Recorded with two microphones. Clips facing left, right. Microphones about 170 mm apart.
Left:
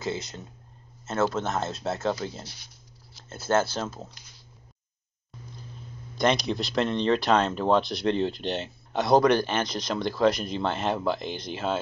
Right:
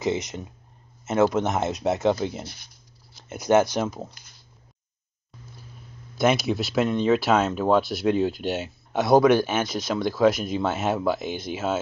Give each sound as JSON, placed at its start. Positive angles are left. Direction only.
{"t": 0.0, "sound": "speech", "side_deg": -20}
{"t": 2.4, "sound": "speech", "side_deg": -50}
{"t": 3.3, "sound": "speech", "side_deg": -15}
{"t": 6.1, "sound": "speech", "side_deg": -5}